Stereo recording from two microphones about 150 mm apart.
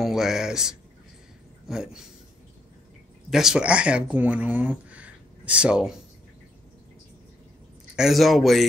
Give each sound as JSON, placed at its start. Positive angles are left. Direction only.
{"t": 0.0, "sound": "speech", "side_deg": -5}
{"t": 3.3, "sound": "speech", "side_deg": -5}
{"t": 7.9, "sound": "speech", "side_deg": 0}